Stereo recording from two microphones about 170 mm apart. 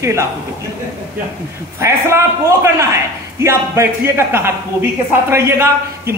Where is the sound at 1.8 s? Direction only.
15° right (ahead or behind).